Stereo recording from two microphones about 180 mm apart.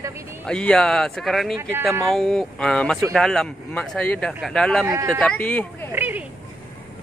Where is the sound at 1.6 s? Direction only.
10° right (ahead or behind).